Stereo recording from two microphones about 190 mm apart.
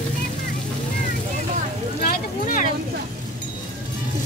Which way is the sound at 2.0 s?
45° left (ahead or behind).